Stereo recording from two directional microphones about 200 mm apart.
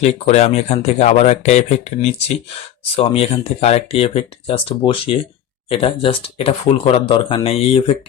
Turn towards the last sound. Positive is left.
turn(degrees=30)  # may be behind; listen again after turning